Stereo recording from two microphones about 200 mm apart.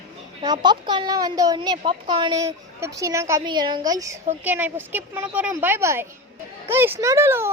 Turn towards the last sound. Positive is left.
turn(degrees=-15)  # may be behind; listen again after turning